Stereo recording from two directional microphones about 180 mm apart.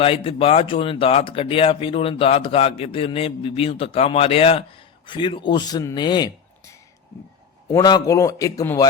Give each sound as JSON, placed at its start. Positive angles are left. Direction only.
{"t": 0.0, "sound": "speech", "side_deg": 30}
{"t": 7.7, "sound": "a man's voice", "side_deg": 20}